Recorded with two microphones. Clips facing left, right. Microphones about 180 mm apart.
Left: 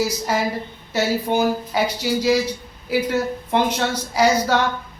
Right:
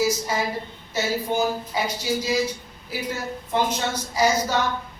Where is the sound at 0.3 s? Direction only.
70° left (ahead or behind).